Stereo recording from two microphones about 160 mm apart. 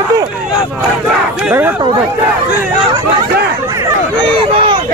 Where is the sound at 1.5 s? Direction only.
10° right (ahead or behind).